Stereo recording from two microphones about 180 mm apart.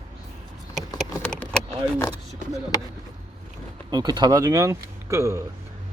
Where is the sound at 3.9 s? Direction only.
20° right (ahead or behind).